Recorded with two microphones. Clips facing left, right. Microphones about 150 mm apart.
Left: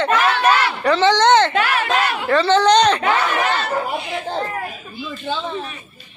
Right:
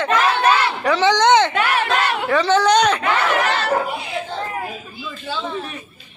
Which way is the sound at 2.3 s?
10° right (ahead or behind).